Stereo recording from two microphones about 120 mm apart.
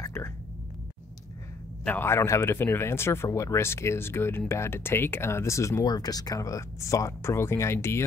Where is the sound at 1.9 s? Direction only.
20° left (ahead or behind).